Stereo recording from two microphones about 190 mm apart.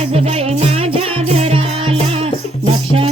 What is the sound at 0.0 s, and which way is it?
Music, 30° right (ahead or behind).